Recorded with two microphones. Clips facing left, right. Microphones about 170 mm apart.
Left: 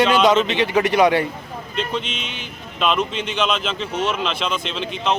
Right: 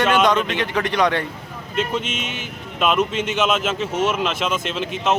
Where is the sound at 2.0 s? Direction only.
50° right (ahead or behind).